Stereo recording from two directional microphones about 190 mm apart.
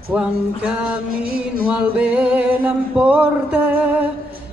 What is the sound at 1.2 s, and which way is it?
Music, 50° right (ahead or behind).